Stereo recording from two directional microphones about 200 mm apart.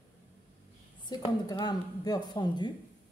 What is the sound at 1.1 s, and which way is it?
Speech, 20° left (ahead or behind).